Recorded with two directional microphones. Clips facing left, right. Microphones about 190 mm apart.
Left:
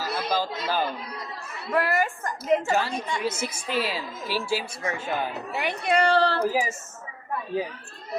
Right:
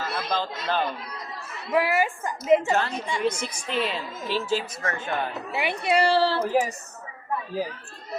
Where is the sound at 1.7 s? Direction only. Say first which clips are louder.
Right 2 dB; 10° right (ahead or behind).